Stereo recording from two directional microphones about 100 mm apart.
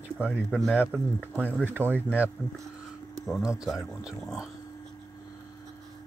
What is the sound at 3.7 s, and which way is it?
Speech, centre (ahead or behind).